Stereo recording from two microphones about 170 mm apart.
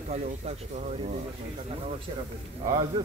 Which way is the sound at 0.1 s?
40° right (ahead or behind).